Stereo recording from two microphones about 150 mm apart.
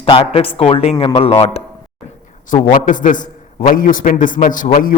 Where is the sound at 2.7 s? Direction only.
60° left (ahead or behind).